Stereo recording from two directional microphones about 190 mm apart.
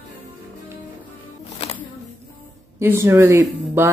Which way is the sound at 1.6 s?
30° left (ahead or behind).